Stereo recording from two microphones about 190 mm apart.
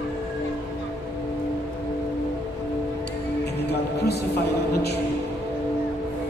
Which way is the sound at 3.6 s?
60° left (ahead or behind).